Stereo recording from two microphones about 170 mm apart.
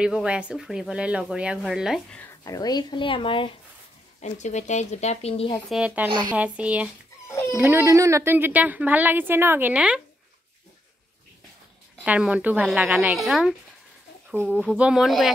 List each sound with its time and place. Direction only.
0.0 s speech: 5° right (ahead or behind)
2.4 s speech: 20° left (ahead or behind)
4.2 s speech: 45° left (ahead or behind)
5.7 s a woman's voice: 5° right (ahead or behind)
6.0 s speech: 30° right (ahead or behind)
6.3 s a woman's voice: 10° right (ahead or behind)
12.0 s speech: 5° right (ahead or behind)
14.8 s speech: 5° right (ahead or behind)